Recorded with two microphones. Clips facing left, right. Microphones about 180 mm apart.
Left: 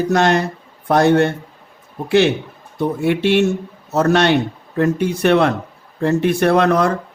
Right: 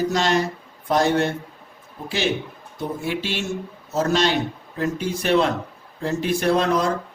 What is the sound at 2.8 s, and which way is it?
A man's voice, 65° left (ahead or behind).